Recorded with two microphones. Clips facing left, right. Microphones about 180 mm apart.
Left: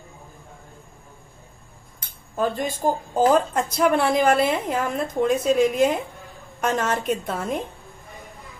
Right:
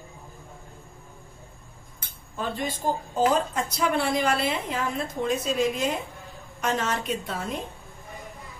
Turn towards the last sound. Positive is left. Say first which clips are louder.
# left 5 dB
turn(degrees=50)  # may be behind; listen again after turning